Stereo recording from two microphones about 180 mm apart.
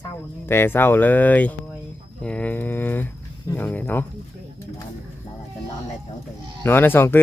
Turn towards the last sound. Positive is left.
turn(degrees=10)  # may be behind; listen again after turning